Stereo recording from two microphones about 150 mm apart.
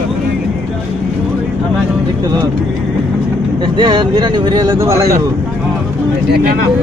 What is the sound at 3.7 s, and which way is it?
Speech, 30° right (ahead or behind).